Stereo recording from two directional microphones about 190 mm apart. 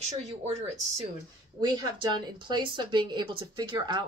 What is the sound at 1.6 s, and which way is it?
Speech, 25° right (ahead or behind).